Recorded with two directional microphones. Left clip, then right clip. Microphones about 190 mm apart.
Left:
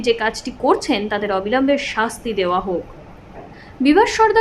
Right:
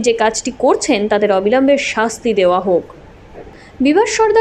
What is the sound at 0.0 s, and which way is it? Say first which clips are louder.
A woman's voice: right 5 dB; 20° right (ahead or behind).